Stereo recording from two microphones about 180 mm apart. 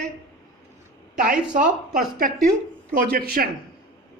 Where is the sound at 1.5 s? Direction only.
50° right (ahead or behind).